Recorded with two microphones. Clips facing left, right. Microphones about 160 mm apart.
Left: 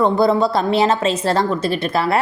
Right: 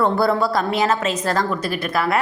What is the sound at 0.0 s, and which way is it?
A woman's voice, 20° left (ahead or behind).